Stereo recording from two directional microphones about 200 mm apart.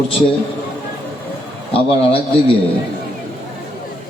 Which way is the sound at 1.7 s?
30° left (ahead or behind).